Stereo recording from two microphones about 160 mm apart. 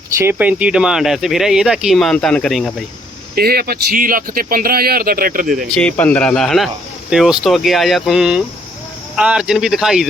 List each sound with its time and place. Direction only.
0.2 s speech: 10° right (ahead or behind)
3.3 s speech: 75° right (ahead or behind)
5.7 s speech: 10° left (ahead or behind)